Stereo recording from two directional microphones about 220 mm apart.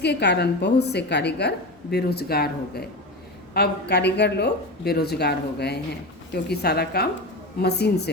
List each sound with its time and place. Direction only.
0.0 s a woman's voice: 50° left (ahead or behind)